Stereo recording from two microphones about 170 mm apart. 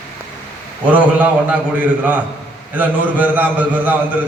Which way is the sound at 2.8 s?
10° right (ahead or behind).